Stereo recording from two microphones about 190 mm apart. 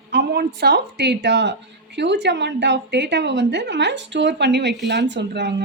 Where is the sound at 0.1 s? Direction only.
60° right (ahead or behind).